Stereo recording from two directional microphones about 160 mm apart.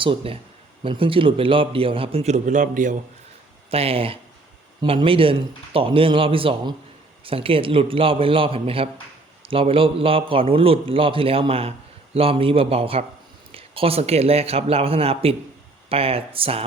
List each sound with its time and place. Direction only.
0.0 s a man's voice: 35° right (ahead or behind); by 3.0 s 55° right (ahead or behind)
3.7 s a man's voice: 40° right (ahead or behind)